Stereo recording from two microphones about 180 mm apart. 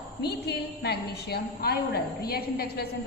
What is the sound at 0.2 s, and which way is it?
A woman's voice, 65° left (ahead or behind).